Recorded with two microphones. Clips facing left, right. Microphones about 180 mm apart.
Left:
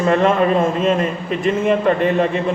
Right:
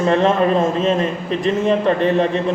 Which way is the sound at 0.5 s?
Centre (ahead or behind).